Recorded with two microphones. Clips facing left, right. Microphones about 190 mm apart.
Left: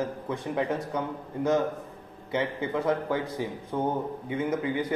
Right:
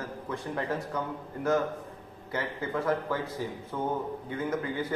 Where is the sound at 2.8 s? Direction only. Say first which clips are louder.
Left 2 dB; 15° left (ahead or behind).